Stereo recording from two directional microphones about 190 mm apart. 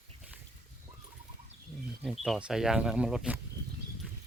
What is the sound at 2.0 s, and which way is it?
Speech, centre (ahead or behind).